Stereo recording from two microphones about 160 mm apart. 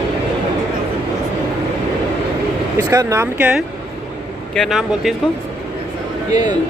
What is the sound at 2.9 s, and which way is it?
Speech, 20° right (ahead or behind).